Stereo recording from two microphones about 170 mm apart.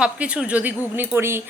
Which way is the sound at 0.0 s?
5° right (ahead or behind).